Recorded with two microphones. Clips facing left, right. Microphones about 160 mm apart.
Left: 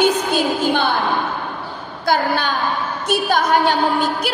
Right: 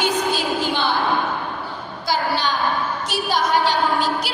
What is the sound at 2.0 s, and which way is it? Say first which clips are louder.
A woman's voice: left 4 dB; 55° left (ahead or behind).